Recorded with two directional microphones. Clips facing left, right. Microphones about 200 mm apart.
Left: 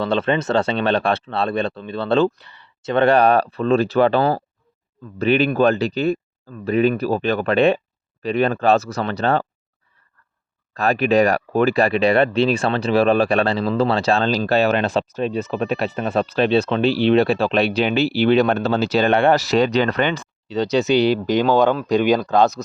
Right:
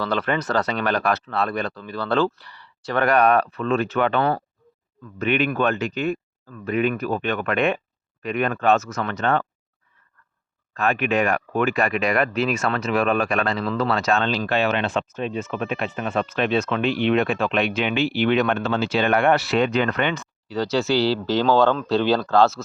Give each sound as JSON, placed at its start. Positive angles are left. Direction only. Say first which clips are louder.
{"t": 0.0, "sound": "speech", "louder": "left 4 dB", "side_deg": 25}
{"t": 10.8, "sound": "speech", "louder": "left 5 dB", "side_deg": 35}
{"t": 20.5, "sound": "speech", "louder": "left 4 dB", "side_deg": 20}